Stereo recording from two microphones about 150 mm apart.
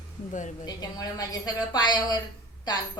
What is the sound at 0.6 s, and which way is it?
A woman's voice, 25° left (ahead or behind).